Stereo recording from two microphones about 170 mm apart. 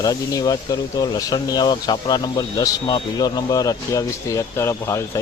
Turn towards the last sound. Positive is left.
turn(degrees=15)  # may be behind; listen again after turning